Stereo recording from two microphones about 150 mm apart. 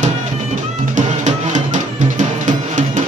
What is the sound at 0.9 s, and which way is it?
Music, 55° right (ahead or behind).